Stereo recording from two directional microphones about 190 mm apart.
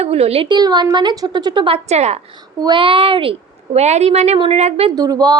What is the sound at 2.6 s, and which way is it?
A woman's voice, 25° right (ahead or behind).